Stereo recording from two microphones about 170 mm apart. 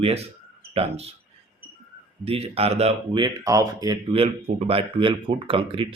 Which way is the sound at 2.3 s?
35° right (ahead or behind).